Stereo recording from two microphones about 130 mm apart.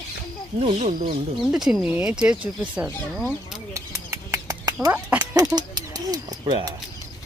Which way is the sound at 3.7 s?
25° right (ahead or behind).